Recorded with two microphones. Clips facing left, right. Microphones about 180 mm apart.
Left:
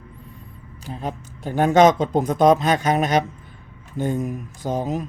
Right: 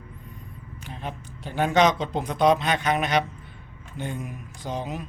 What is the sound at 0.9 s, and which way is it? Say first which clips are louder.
Speech: left 6 dB; 40° left (ahead or behind).